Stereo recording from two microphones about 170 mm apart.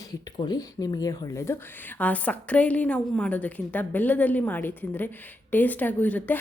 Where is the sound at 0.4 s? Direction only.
25° left (ahead or behind).